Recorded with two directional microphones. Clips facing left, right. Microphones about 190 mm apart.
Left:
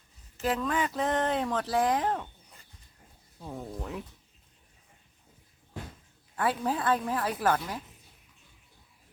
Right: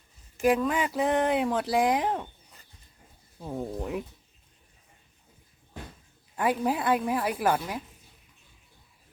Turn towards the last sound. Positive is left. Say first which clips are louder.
# right 1 dB
turn(degrees=-10)  # may be behind; listen again after turning